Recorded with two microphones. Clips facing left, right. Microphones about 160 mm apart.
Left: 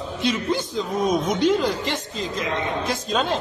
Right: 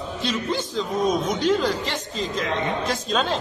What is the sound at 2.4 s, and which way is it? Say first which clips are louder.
A man's voice: even; 5° left (ahead or behind).